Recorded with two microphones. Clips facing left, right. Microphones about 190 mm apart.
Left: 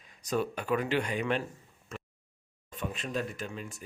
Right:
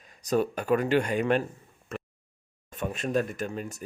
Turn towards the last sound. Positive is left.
turn(degrees=-40)  # may be behind; listen again after turning